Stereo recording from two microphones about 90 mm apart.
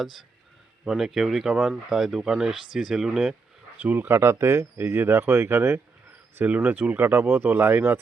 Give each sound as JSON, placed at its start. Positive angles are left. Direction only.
{"t": 0.0, "sound": "speech", "side_deg": -5}
{"t": 3.8, "sound": "speech", "side_deg": -20}